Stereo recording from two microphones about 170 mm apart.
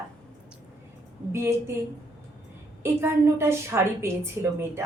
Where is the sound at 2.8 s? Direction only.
15° right (ahead or behind).